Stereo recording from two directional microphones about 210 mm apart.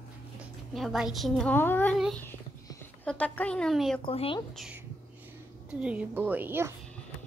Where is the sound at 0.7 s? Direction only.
Centre (ahead or behind).